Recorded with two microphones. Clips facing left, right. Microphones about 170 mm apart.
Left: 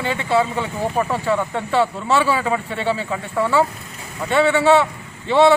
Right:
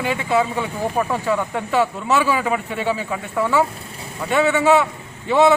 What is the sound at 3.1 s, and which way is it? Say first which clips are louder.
Speech: left 1 dB; centre (ahead or behind).